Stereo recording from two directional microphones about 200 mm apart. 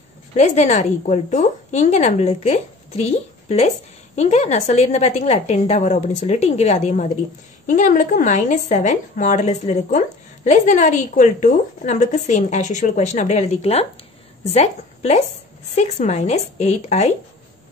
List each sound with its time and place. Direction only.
0.4 s a woman's voice: 35° left (ahead or behind)